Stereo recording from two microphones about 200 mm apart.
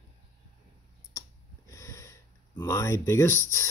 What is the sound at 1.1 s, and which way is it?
Clicking, 15° left (ahead or behind).